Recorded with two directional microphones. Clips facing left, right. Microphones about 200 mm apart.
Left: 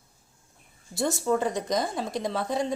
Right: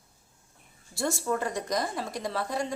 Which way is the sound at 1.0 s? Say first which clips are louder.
Left 4 dB; 20° left (ahead or behind).